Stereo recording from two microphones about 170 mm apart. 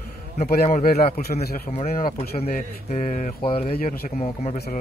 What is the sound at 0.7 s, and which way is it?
Speech, 55° left (ahead or behind).